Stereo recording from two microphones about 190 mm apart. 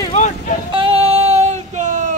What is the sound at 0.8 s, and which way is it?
Female singing, 30° right (ahead or behind).